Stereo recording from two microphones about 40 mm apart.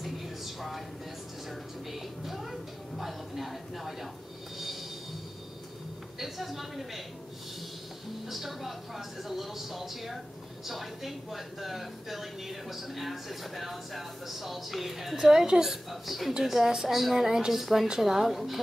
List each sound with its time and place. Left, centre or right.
0.6 s vehicle: centre
1.9 s music: centre
6.1 s speech: centre
8.3 s speech: centre
15.9 s speech: centre